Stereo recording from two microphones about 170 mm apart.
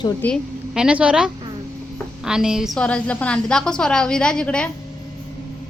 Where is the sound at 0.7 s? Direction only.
5° right (ahead or behind).